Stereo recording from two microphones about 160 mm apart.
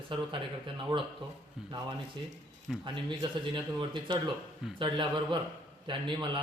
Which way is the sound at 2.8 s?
30° right (ahead or behind).